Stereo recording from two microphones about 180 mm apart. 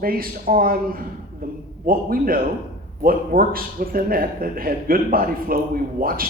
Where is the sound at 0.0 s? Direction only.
55° right (ahead or behind).